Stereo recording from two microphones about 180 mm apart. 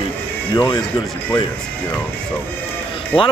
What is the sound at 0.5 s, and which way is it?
Speech, 25° left (ahead or behind).